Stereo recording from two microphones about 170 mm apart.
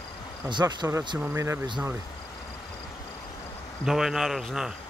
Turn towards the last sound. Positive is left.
turn(degrees=0)  # may be behind; listen again after turning